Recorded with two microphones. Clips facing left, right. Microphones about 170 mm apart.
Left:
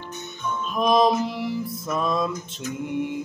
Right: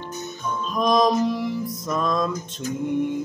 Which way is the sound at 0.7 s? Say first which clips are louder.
Even; 5° left (ahead or behind).